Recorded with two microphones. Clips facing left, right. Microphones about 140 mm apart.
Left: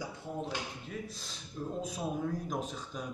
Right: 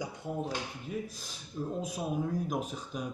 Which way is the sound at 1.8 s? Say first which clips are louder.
Right 1 dB; 10° right (ahead or behind).